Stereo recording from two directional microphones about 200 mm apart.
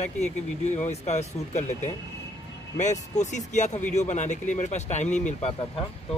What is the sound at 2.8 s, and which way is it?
Speech, 35° left (ahead or behind).